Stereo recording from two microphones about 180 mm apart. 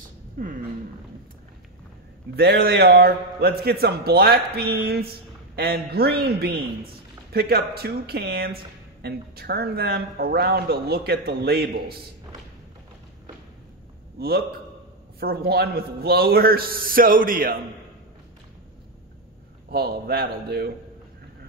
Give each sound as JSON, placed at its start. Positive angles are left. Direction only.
{"t": 0.4, "sound": "speech", "side_deg": -50}
{"t": 2.3, "sound": "speech", "side_deg": -60}
{"t": 15.1, "sound": "speech", "side_deg": -60}
{"t": 19.7, "sound": "speech", "side_deg": -60}